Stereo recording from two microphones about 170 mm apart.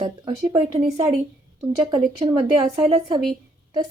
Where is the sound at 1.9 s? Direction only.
30° right (ahead or behind).